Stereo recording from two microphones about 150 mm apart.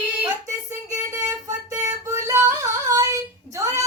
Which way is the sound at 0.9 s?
25° right (ahead or behind).